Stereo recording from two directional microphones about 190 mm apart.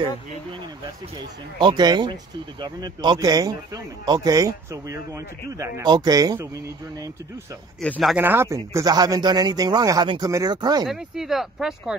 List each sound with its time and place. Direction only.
1.6 s a man's voice: 25° right (ahead or behind)
7.8 s speech: centre (ahead or behind)
8.2 s a man's voice: 10° right (ahead or behind)
10.9 s speech: centre (ahead or behind)